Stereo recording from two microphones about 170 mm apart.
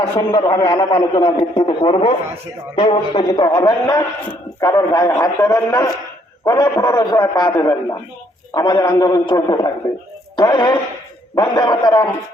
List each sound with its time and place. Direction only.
0.0 s a man's voice: 30° left (ahead or behind)
10.3 s radio: 25° left (ahead or behind)
11.3 s a man's voice: 25° left (ahead or behind)